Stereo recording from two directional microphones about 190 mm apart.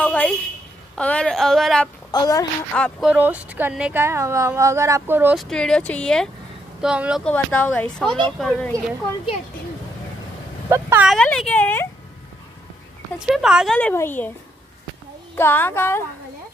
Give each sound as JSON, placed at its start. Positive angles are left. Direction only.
{"t": 0.0, "sound": "a sound", "side_deg": 5}
{"t": 0.9, "sound": "speech", "side_deg": 5}
{"t": 2.0, "sound": "a woman's voice", "side_deg": 20}
{"t": 2.7, "sound": "speech", "side_deg": 5}
{"t": 3.1, "sound": "speech", "side_deg": -10}
{"t": 5.4, "sound": "speech", "side_deg": 5}
{"t": 7.2, "sound": "speech", "side_deg": 10}
{"t": 10.7, "sound": "speech", "side_deg": -10}
{"t": 11.1, "sound": "speech", "side_deg": 5}
{"t": 13.3, "sound": "speech", "side_deg": -5}
{"t": 13.7, "sound": "speech", "side_deg": 10}
{"t": 15.3, "sound": "speech", "side_deg": 10}